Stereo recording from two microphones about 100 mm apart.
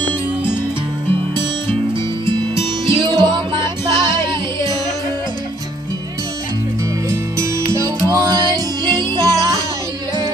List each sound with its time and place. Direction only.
2.9 s music: 50° right (ahead or behind)
7.1 s music: 30° right (ahead or behind); by 9.6 s 45° right (ahead or behind)